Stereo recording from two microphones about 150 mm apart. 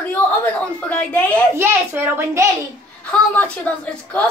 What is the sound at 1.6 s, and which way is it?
Speech, 15° right (ahead or behind).